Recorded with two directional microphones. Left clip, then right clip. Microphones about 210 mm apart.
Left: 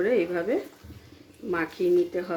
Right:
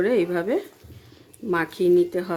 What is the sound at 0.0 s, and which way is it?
Speech, 40° right (ahead or behind).